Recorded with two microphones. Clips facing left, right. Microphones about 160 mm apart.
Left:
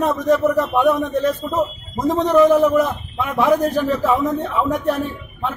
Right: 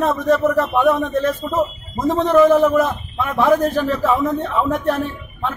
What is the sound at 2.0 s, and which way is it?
A man's voice, 15° left (ahead or behind).